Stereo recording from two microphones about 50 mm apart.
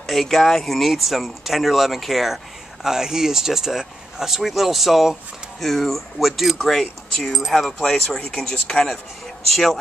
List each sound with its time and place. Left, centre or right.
0.0 s speech: centre